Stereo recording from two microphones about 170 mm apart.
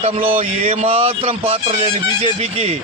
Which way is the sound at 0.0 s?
35° right (ahead or behind).